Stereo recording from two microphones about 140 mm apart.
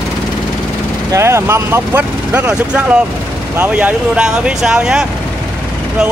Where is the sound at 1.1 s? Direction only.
20° right (ahead or behind).